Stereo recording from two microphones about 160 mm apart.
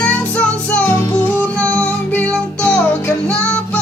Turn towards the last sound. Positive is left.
turn(degrees=10)  # may be behind; listen again after turning